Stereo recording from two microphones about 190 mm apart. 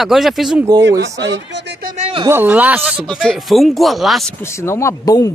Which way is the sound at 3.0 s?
5° left (ahead or behind).